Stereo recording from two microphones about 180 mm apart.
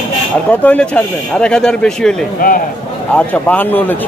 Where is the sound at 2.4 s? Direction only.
50° left (ahead or behind).